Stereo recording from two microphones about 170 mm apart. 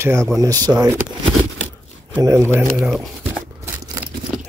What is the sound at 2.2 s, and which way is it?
Speech, 20° right (ahead or behind).